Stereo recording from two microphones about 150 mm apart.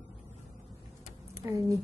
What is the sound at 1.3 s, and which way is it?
Speech, 20° right (ahead or behind).